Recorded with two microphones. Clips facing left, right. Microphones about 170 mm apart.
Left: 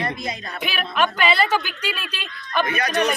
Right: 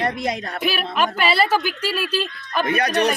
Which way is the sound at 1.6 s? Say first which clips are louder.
Right 5 dB; 35° right (ahead or behind).